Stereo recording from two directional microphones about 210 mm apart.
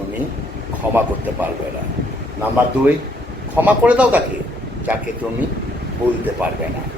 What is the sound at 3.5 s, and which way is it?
Speech, 5° right (ahead or behind).